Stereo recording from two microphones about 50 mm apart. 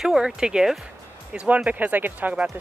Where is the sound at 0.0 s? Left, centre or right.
Centre.